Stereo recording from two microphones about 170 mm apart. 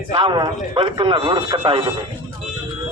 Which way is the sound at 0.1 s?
30° right (ahead or behind).